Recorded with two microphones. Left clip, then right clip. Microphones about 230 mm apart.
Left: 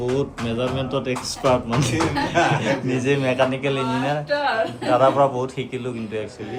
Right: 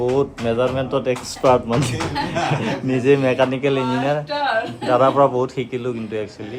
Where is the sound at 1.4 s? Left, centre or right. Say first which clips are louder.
Right 4 dB; right.